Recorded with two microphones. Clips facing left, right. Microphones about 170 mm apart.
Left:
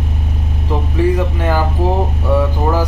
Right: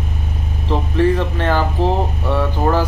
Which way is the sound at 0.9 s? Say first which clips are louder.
Even; 10° left (ahead or behind).